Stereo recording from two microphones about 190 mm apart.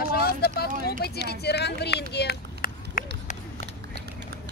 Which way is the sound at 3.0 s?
40° left (ahead or behind).